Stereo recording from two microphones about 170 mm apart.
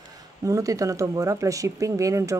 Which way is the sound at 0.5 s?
20° right (ahead or behind).